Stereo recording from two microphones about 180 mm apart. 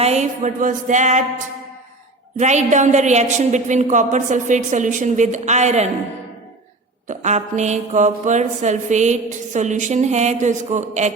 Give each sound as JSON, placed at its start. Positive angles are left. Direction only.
{"t": 0.0, "sound": "music", "side_deg": -40}
{"t": 7.1, "sound": "music", "side_deg": -40}